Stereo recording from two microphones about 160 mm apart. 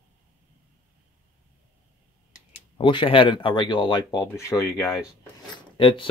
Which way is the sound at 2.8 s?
30° left (ahead or behind).